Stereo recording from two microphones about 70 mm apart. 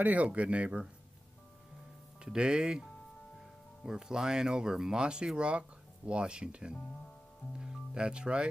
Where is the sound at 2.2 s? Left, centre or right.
Centre.